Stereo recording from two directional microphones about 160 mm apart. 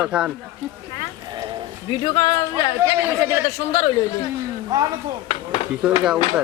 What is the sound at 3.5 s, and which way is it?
Speech, 40° left (ahead or behind).